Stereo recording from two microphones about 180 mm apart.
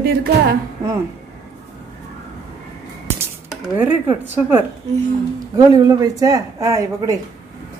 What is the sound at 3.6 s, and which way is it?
A woman's voice, 10° right (ahead or behind).